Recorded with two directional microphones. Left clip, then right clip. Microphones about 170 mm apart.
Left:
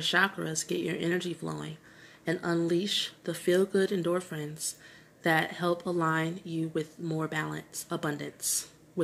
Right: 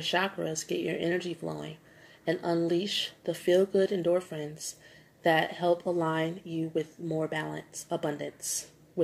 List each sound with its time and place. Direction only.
0.0 s speech: 30° left (ahead or behind)